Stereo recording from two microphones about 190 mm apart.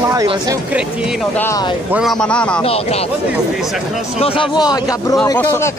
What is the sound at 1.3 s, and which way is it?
Speech, 10° left (ahead or behind).